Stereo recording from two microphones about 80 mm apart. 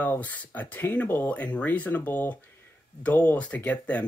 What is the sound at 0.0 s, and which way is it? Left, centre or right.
Speech, left.